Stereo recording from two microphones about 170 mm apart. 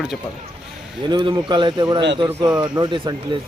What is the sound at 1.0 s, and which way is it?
A man's voice, 25° right (ahead or behind).